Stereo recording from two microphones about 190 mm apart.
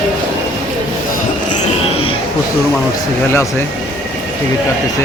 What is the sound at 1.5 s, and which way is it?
Music, 35° left (ahead or behind).